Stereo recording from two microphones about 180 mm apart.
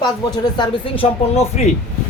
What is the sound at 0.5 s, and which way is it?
Speech, 25° left (ahead or behind).